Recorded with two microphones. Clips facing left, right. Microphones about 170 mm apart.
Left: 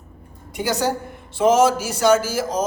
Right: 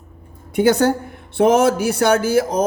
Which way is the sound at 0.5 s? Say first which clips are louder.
Right 7 dB; 55° right (ahead or behind).